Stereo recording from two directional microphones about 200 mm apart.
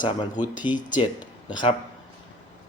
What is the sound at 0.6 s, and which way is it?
Speech, 25° left (ahead or behind).